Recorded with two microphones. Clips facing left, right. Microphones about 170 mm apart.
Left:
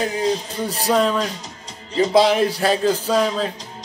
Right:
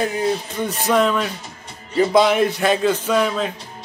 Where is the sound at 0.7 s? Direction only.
35° left (ahead or behind).